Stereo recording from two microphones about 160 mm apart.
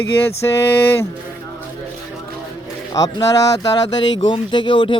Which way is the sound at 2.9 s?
25° left (ahead or behind).